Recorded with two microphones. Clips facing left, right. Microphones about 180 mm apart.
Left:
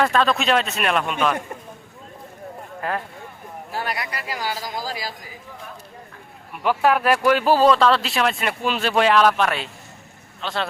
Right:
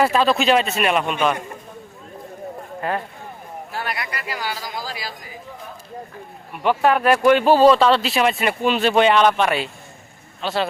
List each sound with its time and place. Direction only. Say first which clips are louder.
0.0 s speech: right 2 dB; 5° right (ahead or behind)
2.8 s speech: right 2 dB; centre (ahead or behind)
3.7 s speech: left 1 dB; 35° left (ahead or behind)
6.5 s a man's voice: right 1 dB; 5° left (ahead or behind)